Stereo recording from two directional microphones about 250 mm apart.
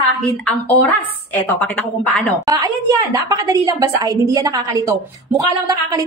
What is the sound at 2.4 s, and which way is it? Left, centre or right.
A woman's voice, centre.